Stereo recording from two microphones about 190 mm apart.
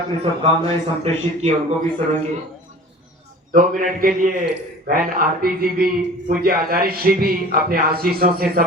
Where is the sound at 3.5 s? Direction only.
45° right (ahead or behind).